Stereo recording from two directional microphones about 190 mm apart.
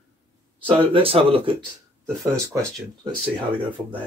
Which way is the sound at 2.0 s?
5° left (ahead or behind).